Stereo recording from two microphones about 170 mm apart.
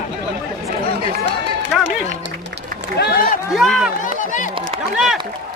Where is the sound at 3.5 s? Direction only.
Centre (ahead or behind).